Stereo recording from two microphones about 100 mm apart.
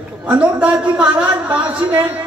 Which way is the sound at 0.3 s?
10° right (ahead or behind).